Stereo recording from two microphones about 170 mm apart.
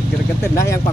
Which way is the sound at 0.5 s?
15° left (ahead or behind).